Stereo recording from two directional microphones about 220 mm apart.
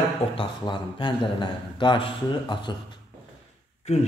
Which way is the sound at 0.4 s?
20° left (ahead or behind).